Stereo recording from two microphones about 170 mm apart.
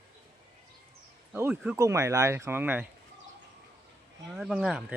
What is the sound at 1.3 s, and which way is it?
Speech, 10° right (ahead or behind).